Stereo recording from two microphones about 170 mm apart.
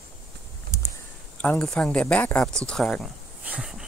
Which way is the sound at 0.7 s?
15° left (ahead or behind).